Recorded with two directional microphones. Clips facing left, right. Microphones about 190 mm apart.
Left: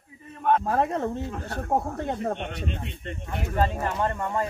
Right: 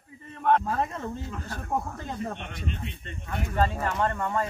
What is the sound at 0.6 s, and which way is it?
Speech, 65° left (ahead or behind).